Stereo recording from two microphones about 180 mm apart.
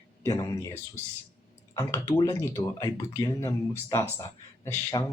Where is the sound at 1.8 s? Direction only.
15° left (ahead or behind).